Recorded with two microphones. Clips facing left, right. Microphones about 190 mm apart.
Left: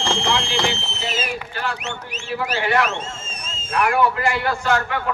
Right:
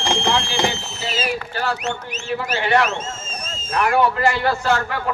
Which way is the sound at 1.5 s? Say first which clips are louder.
Right 4 dB; 40° right (ahead or behind).